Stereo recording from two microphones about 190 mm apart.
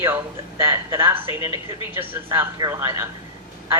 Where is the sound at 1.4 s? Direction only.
25° left (ahead or behind).